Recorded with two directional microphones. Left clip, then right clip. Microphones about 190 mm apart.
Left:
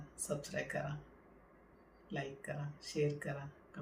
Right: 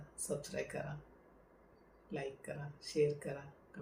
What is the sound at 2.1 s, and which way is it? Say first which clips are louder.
Speech: even; 10° left (ahead or behind).